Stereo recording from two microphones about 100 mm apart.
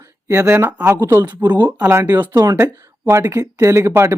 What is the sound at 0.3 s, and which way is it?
Speech, 25° right (ahead or behind).